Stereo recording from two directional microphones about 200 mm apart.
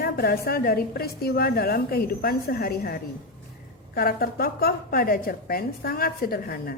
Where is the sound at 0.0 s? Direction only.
50° left (ahead or behind).